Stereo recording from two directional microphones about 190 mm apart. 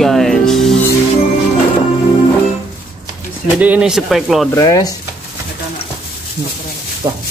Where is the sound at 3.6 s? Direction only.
5° right (ahead or behind).